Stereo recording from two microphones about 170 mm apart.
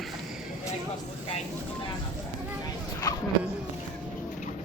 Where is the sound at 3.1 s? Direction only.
20° left (ahead or behind).